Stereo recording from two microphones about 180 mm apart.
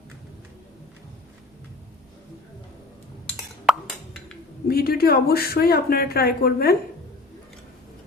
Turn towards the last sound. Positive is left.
turn(degrees=55)  # may be behind; listen again after turning